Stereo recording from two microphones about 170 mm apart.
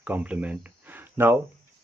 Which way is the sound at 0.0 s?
10° right (ahead or behind).